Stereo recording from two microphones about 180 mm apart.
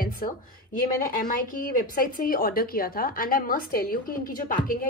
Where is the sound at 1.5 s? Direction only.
50° left (ahead or behind).